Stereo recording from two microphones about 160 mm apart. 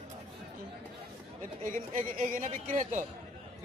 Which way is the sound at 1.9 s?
55° right (ahead or behind).